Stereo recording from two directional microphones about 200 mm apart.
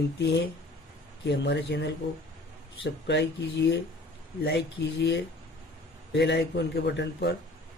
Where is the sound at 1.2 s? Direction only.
60° left (ahead or behind).